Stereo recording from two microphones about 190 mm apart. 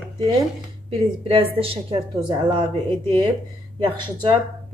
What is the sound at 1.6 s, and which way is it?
Speech, 30° right (ahead or behind).